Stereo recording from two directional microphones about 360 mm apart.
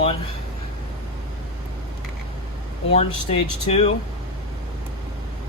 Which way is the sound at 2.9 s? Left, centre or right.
Centre.